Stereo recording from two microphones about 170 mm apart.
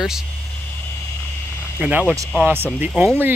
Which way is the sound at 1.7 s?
10° right (ahead or behind).